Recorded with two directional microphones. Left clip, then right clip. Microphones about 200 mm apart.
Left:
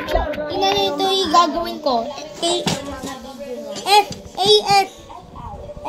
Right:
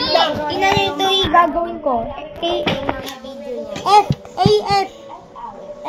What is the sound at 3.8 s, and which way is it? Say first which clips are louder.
A child's voice: right 2 dB; 15° left (ahead or behind).